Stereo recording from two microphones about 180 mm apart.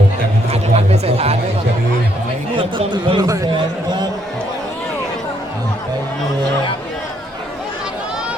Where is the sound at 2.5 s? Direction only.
30° right (ahead or behind).